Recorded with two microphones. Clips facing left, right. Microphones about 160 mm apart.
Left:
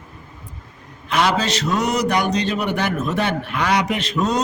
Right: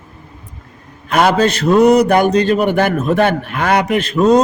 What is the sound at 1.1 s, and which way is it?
A man's voice, 50° right (ahead or behind).